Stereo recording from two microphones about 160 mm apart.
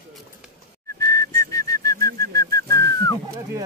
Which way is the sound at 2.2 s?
20° left (ahead or behind).